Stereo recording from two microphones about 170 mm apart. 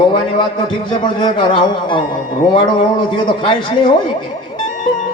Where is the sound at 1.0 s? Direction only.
30° left (ahead or behind).